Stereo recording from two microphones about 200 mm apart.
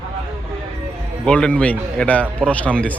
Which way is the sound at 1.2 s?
5° left (ahead or behind).